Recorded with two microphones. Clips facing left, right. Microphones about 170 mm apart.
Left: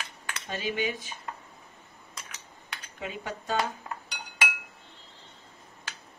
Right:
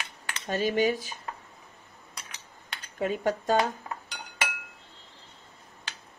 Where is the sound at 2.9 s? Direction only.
45° right (ahead or behind).